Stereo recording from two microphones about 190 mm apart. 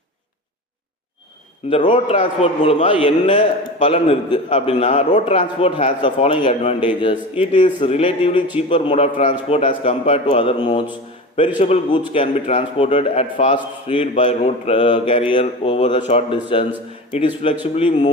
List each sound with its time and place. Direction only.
1.9 s a man's voice: 30° left (ahead or behind)
5.5 s a man's voice: 30° left (ahead or behind)